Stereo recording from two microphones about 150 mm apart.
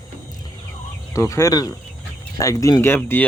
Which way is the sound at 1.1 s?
20° left (ahead or behind).